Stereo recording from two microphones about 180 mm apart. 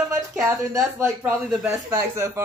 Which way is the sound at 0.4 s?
15° right (ahead or behind).